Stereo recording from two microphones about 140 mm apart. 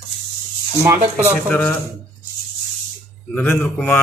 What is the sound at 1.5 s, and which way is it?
Speech, 10° left (ahead or behind).